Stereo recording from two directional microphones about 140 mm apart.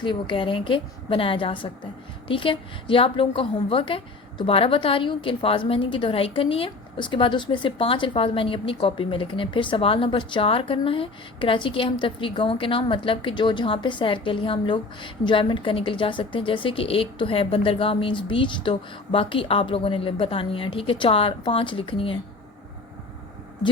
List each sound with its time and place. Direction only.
0.0 s a woman's voice: 35° left (ahead or behind)